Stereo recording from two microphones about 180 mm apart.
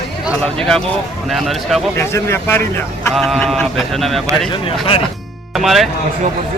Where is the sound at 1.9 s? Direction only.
15° left (ahead or behind).